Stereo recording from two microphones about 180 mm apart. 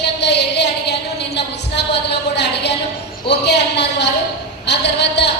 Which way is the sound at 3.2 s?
70° left (ahead or behind).